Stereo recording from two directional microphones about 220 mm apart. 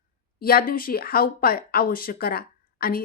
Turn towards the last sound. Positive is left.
turn(degrees=40)  # may be behind; listen again after turning